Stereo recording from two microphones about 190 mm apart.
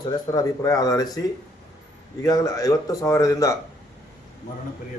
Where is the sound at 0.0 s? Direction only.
20° left (ahead or behind).